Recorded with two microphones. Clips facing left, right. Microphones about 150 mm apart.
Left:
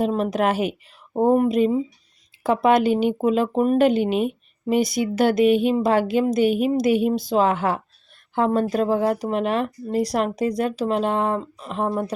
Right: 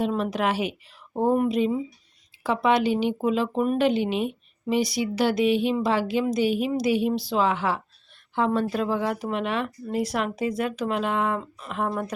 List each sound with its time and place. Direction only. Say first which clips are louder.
0.0 s speech: left 4 dB; 40° left (ahead or behind)